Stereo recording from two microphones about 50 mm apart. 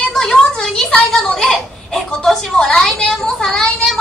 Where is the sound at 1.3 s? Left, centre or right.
Centre.